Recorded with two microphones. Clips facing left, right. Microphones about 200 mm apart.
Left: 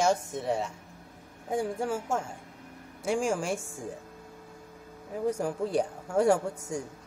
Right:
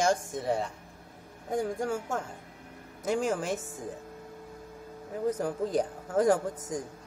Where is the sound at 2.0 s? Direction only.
25° left (ahead or behind).